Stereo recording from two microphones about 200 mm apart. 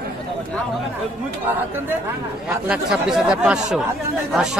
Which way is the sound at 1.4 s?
10° right (ahead or behind).